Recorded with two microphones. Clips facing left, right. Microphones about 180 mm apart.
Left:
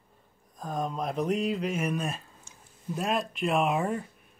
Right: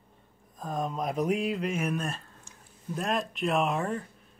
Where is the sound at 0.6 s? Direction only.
Centre (ahead or behind).